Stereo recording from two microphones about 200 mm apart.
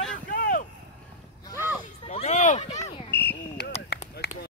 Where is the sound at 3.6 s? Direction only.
55° left (ahead or behind).